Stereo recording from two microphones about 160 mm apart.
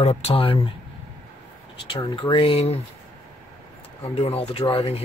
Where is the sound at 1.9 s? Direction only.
30° left (ahead or behind).